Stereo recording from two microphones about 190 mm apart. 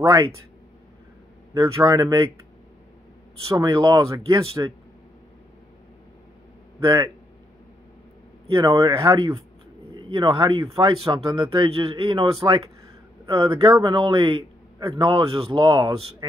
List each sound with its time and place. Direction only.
0.0 s a man's voice: 20° right (ahead or behind)
1.5 s speech: 15° right (ahead or behind)
3.4 s a man's voice: 20° right (ahead or behind)
6.8 s speech: 20° right (ahead or behind)
8.5 s a man's voice: 25° right (ahead or behind)